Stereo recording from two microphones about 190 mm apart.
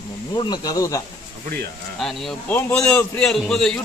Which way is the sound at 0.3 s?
25° left (ahead or behind).